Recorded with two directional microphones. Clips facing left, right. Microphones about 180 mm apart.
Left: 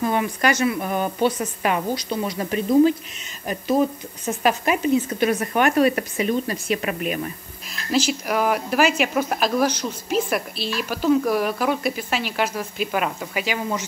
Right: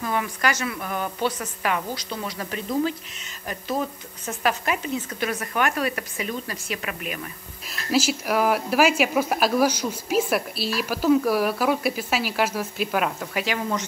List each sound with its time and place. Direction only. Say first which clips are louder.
0.0 s speech: left 4 dB; 25° left (ahead or behind)
7.7 s speech: left 1 dB; 5° right (ahead or behind)